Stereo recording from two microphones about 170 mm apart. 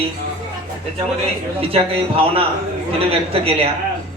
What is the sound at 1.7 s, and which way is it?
A man's voice, 35° right (ahead or behind).